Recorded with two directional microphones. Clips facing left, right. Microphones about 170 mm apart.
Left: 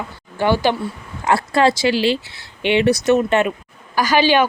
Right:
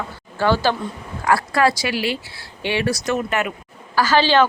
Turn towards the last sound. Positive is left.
turn(degrees=15)  # may be behind; listen again after turning